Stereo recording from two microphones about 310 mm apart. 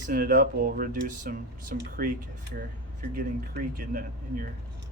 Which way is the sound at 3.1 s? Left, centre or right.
Right.